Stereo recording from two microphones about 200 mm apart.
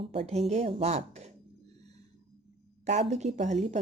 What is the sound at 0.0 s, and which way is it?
Speech, 30° right (ahead or behind).